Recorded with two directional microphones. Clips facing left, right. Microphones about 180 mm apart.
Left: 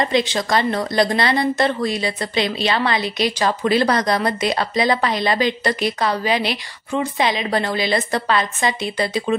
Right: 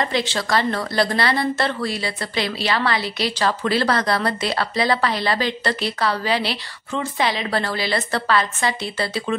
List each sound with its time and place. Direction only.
0.0 s a woman's voice: 15° left (ahead or behind)